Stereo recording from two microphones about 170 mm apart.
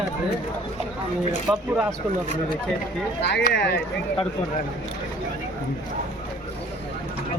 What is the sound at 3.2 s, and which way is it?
Speech, 90° left.